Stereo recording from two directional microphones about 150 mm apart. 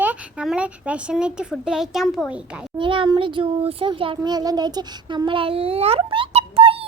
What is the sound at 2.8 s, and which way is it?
A child's voice, 35° right (ahead or behind).